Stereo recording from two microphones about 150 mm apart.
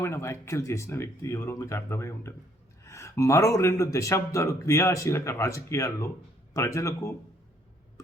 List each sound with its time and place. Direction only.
0.0 s a man's voice: 20° left (ahead or behind)